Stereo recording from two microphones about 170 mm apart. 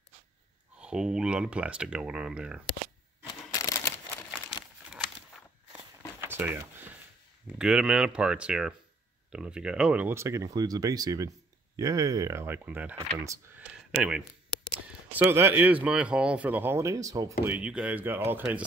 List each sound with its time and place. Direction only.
0.7 s speech: 5° right (ahead or behind)
3.5 s a sound: 20° left (ahead or behind)
4.3 s crumpling: centre (ahead or behind)
6.2 s a sound: 15° right (ahead or behind)
7.5 s speech: 5° right (ahead or behind)
13.9 s speech: 5° right (ahead or behind)
17.6 s speech: 5° right (ahead or behind)